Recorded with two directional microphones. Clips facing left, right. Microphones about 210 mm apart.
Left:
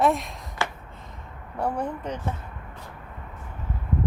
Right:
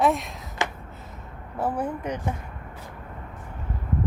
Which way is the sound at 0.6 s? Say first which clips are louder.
Right 1 dB; 20° right (ahead or behind).